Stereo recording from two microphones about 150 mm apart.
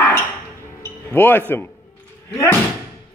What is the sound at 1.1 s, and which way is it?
Speech, 15° left (ahead or behind).